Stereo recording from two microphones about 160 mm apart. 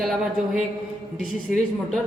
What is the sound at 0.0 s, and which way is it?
Speech, centre (ahead or behind).